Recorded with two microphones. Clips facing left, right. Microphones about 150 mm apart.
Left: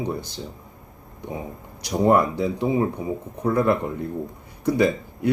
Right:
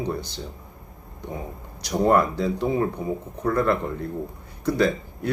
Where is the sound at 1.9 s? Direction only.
15° left (ahead or behind).